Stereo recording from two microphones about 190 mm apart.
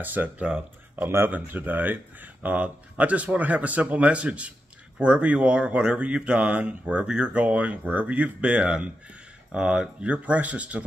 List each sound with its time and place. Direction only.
0.0 s speech: 10° right (ahead or behind)